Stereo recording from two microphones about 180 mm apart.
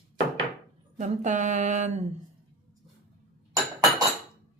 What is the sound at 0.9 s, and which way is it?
Speech, 40° right (ahead or behind).